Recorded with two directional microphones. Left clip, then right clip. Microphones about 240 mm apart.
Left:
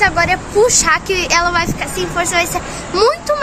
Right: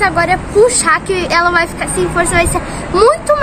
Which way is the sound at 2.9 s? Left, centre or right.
Centre.